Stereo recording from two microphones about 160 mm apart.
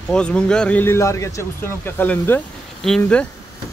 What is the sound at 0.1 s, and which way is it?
Speech, 5° left (ahead or behind).